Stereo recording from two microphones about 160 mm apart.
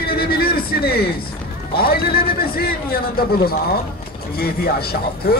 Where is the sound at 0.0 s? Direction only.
70° left (ahead or behind).